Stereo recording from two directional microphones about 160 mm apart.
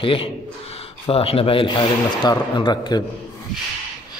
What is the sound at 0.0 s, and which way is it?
Speech, 35° left (ahead or behind).